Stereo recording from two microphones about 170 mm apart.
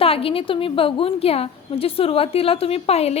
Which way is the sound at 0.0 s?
35° left (ahead or behind).